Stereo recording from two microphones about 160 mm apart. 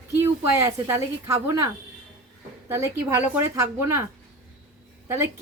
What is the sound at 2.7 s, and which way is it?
A woman's voice, 15° right (ahead or behind).